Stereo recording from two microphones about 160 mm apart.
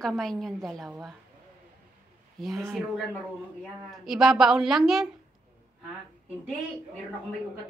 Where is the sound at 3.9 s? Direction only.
Centre (ahead or behind).